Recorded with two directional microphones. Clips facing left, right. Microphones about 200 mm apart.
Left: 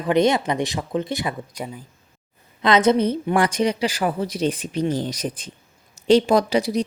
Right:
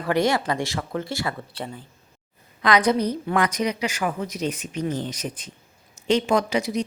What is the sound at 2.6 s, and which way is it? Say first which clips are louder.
Speech: left 3 dB; 25° left (ahead or behind).